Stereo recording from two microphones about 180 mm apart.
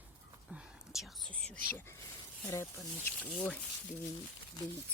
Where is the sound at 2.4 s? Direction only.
15° left (ahead or behind).